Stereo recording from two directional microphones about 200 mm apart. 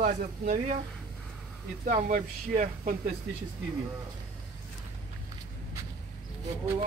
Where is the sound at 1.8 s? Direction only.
40° right (ahead or behind).